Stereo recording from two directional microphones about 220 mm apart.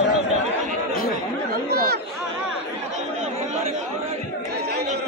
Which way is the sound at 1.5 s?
45° right (ahead or behind).